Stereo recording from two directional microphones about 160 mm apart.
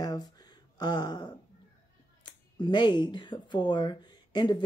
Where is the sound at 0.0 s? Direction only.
25° left (ahead or behind).